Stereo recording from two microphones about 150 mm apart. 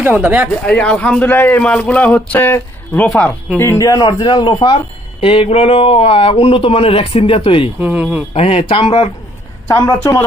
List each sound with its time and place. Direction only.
0.0 s speech: 10° right (ahead or behind)
0.7 s a man's voice: 10° left (ahead or behind); by 7.7 s 35° left (ahead or behind)
7.8 s speech: 10° right (ahead or behind)
8.3 s speech: 40° left (ahead or behind)
9.7 s speech: 15° left (ahead or behind)